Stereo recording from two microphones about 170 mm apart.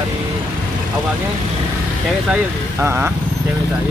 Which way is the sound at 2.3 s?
15° right (ahead or behind).